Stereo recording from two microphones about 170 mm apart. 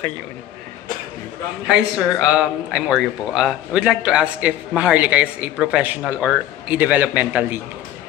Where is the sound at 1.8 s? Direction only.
5° right (ahead or behind).